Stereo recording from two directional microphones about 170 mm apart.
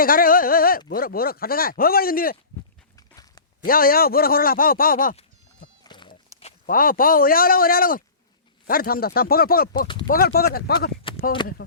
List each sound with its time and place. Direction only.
0.0 s a man's voice: 55° left (ahead or behind)
2.9 s a sound: 20° left (ahead or behind)
3.7 s a man's voice: 60° left (ahead or behind)
5.8 s goat: 25° left (ahead or behind)
6.7 s a man's voice: 55° left (ahead or behind)
9.8 s speech: 30° left (ahead or behind)
10.1 s a man's voice: 60° left (ahead or behind)
11.1 s a sound: 30° left (ahead or behind)